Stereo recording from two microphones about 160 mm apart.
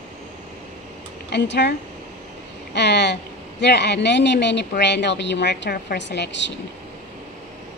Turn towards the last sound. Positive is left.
turn(degrees=90)